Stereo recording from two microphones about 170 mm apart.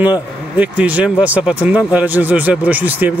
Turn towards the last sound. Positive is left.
turn(degrees=-10)  # may be behind; listen again after turning